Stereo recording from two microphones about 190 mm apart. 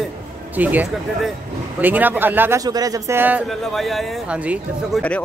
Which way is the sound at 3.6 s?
Centre (ahead or behind).